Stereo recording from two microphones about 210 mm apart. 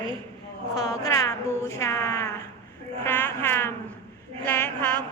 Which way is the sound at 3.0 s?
10° left (ahead or behind).